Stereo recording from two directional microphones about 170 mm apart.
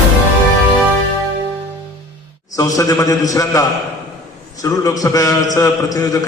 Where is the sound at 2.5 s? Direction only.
20° left (ahead or behind).